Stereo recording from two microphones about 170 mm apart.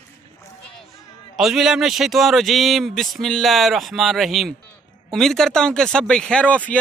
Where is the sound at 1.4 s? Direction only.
Centre (ahead or behind).